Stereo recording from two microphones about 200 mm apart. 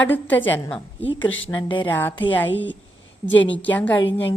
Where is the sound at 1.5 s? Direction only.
25° left (ahead or behind).